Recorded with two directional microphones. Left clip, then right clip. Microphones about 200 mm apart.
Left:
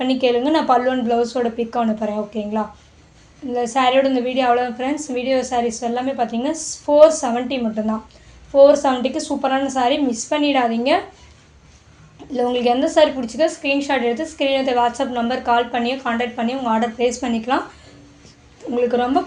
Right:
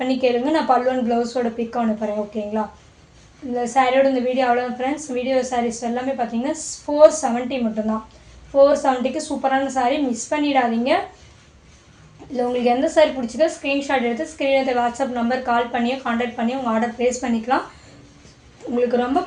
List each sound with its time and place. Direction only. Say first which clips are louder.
0.0 s a woman's voice: left 2 dB; 25° left (ahead or behind)
12.3 s a woman's voice: left 1 dB; 30° left (ahead or behind)
18.7 s a woman's voice: left 1 dB; 30° left (ahead or behind)